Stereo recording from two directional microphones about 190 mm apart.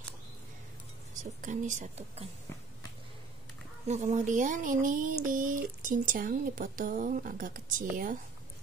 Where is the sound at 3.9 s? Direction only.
40° right (ahead or behind).